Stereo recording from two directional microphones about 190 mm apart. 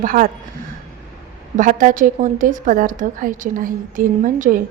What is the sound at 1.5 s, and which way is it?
A woman's voice, 45° right (ahead or behind).